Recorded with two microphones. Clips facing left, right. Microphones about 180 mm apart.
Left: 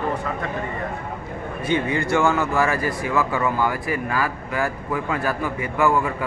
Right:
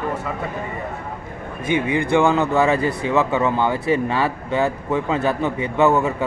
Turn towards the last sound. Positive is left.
turn(degrees=-25)  # may be behind; listen again after turning